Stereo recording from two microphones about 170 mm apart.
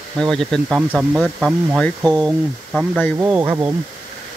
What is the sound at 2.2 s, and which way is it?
Speech, 5° right (ahead or behind).